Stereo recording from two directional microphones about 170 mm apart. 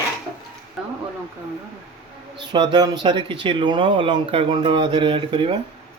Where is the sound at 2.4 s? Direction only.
25° right (ahead or behind).